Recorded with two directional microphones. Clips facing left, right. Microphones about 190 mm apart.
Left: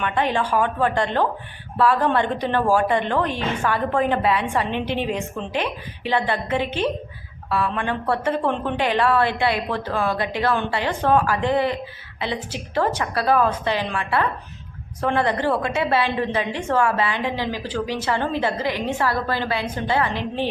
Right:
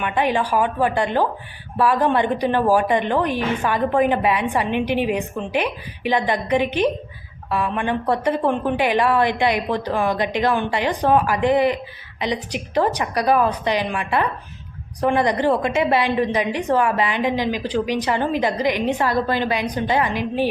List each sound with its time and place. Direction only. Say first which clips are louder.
0.0 s a woman's voice: right 2 dB; 10° right (ahead or behind)